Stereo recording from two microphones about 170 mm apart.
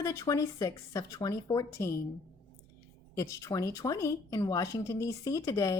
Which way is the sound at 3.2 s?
20° left (ahead or behind).